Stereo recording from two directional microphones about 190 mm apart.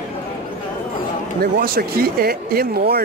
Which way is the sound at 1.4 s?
55° right (ahead or behind).